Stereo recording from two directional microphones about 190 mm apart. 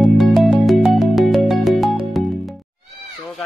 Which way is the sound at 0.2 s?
Centre (ahead or behind).